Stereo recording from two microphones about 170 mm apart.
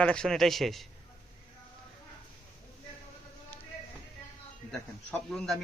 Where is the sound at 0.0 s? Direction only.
5° left (ahead or behind).